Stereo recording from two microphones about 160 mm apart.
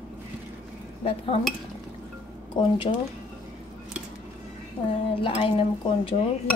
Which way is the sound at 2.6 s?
30° left (ahead or behind).